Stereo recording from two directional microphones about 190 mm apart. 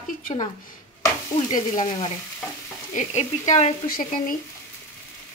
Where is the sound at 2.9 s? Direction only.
40° left (ahead or behind).